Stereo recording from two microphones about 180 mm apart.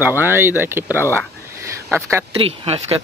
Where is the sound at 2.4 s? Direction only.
35° right (ahead or behind).